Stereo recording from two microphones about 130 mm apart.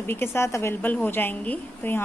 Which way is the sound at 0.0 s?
15° left (ahead or behind).